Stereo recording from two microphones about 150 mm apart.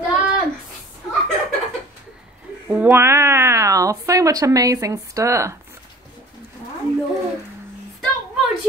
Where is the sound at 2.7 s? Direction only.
10° right (ahead or behind).